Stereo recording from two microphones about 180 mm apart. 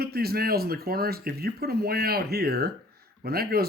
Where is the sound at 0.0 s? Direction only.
60° right (ahead or behind).